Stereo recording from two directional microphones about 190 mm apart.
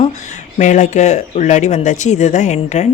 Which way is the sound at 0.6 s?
40° left (ahead or behind).